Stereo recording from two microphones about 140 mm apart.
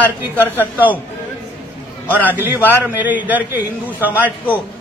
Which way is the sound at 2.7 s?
15° right (ahead or behind).